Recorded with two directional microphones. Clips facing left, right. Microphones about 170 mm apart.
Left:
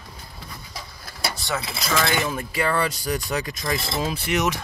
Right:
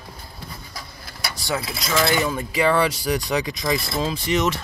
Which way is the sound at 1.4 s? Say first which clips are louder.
Right 2 dB; centre (ahead or behind).